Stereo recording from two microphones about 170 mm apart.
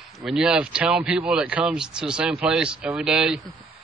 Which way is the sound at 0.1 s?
Centre (ahead or behind).